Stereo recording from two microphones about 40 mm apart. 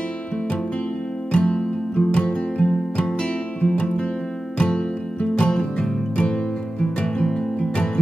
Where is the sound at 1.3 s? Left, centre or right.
Left.